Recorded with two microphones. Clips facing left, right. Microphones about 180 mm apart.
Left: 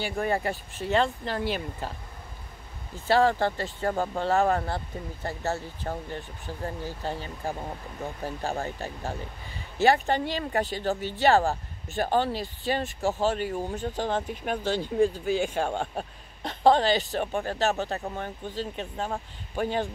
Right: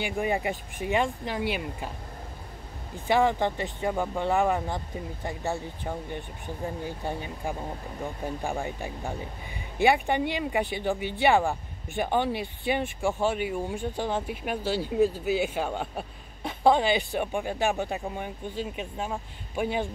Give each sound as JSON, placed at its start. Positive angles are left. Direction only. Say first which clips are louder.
{"t": 0.0, "sound": "speech", "louder": "even", "side_deg": -15}
{"t": 3.1, "sound": "speech", "louder": "left 1 dB", "side_deg": -15}
{"t": 3.9, "sound": "speech", "louder": "left 1 dB", "side_deg": 0}
{"t": 4.2, "sound": "speech", "louder": "left 1 dB", "side_deg": -15}